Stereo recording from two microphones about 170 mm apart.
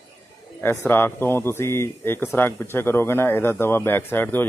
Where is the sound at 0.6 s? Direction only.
10° left (ahead or behind).